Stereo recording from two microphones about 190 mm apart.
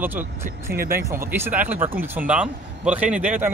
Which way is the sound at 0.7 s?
50° right (ahead or behind).